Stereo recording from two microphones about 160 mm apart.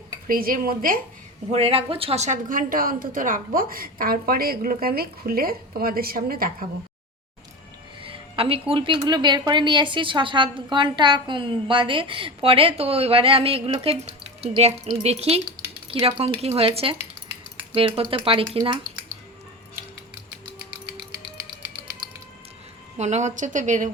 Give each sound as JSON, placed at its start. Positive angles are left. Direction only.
{"t": 0.3, "sound": "a woman's voice", "side_deg": -65}
{"t": 1.5, "sound": "a woman's voice", "side_deg": -40}
{"t": 8.0, "sound": "a sound", "side_deg": -35}
{"t": 8.7, "sound": "a woman's voice", "side_deg": -30}
{"t": 15.5, "sound": "a sound", "side_deg": -35}
{"t": 16.4, "sound": "a woman's voice", "side_deg": -40}
{"t": 23.0, "sound": "a woman's voice", "side_deg": -45}